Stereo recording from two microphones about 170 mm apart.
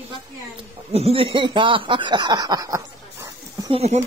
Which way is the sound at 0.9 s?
35° right (ahead or behind).